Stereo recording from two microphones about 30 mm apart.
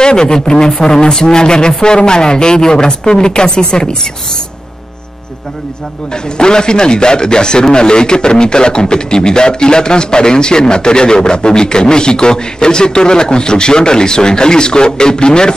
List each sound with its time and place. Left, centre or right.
0.0 s a man's voice: left
6.3 s a man's voice: left